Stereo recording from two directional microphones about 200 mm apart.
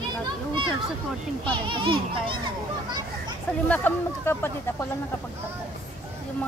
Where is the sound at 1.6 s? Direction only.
25° right (ahead or behind).